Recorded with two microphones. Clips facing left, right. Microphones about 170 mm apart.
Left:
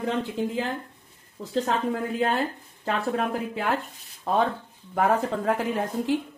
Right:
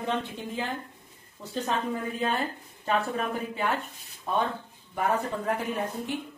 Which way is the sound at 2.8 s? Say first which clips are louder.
Left 2 dB; 85° left.